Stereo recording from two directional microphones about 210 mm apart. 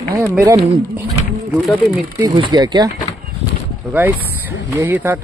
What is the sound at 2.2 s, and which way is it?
Speech, 20° right (ahead or behind).